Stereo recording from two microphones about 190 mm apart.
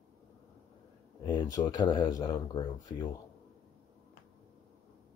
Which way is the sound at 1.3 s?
20° left (ahead or behind).